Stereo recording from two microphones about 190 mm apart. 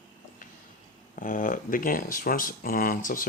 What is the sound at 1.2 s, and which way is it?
Speech, 45° left (ahead or behind).